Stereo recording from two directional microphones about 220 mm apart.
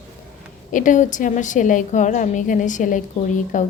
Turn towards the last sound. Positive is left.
turn(degrees=35)  # may be behind; listen again after turning